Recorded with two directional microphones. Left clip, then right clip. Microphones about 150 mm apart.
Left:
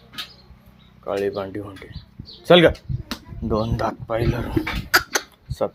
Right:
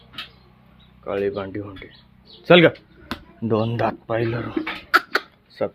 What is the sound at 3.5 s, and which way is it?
Speech, 40° right (ahead or behind).